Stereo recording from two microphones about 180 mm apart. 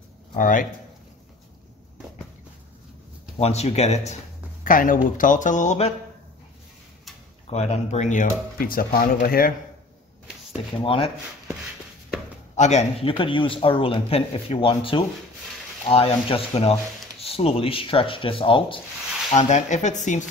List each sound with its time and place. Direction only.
0.4 s speech: 50° left (ahead or behind)
3.3 s speech: 35° left (ahead or behind)
4.6 s speech: 50° left (ahead or behind)
7.4 s speech: 35° left (ahead or behind); by 9.5 s 55° left (ahead or behind)
10.8 s speech: 30° left (ahead or behind)
12.5 s speech: 40° left (ahead or behind)
19.3 s speech: 40° left (ahead or behind)